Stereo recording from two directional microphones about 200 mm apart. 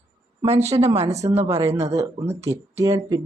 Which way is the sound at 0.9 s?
30° right (ahead or behind).